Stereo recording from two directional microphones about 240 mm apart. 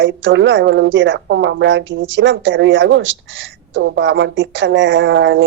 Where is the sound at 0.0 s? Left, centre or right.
Right.